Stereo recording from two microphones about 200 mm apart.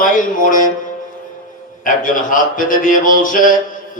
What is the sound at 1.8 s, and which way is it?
Speech, 45° left (ahead or behind).